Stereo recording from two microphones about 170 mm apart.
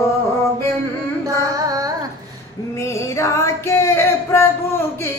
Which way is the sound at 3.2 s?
15° left (ahead or behind).